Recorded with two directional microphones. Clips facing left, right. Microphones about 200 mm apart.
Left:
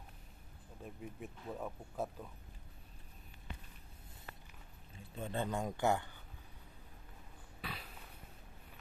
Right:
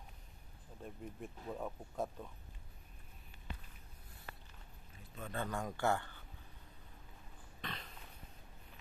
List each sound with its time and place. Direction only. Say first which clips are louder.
0.8 s speech: even; 5° left (ahead or behind)
5.1 s speech: left 3 dB; 25° left (ahead or behind)
7.6 s a sound: even; 10° left (ahead or behind)